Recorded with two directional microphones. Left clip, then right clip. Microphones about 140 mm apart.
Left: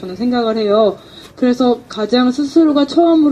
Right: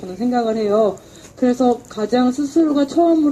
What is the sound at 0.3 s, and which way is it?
Speech, 55° left (ahead or behind).